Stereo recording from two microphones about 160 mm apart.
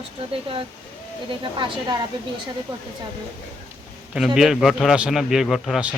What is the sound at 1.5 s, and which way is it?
Speech, 30° right (ahead or behind).